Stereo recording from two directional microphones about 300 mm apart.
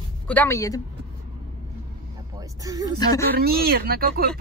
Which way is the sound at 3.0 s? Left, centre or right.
Centre.